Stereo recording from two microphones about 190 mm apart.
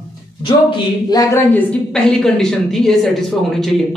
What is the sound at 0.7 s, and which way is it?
A woman's voice, 25° left (ahead or behind).